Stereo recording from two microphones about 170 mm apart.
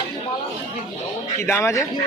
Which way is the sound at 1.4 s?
15° left (ahead or behind).